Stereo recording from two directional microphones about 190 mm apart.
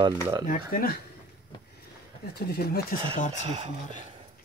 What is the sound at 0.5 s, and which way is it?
Speech, 50° left (ahead or behind).